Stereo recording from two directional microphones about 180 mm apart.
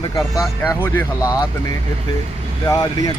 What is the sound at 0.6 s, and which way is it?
Speech, 10° left (ahead or behind).